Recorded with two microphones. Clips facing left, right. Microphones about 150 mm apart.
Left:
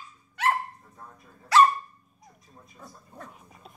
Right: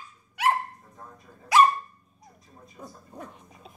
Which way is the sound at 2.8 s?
15° right (ahead or behind).